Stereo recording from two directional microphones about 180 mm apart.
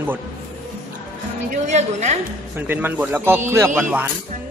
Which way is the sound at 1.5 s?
40° right (ahead or behind).